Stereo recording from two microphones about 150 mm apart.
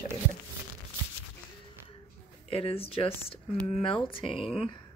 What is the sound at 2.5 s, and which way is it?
Frying, 40° left (ahead or behind).